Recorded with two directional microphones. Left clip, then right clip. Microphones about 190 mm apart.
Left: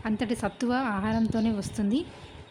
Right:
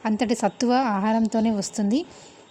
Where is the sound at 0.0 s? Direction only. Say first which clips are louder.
Right 7 dB; 25° right (ahead or behind).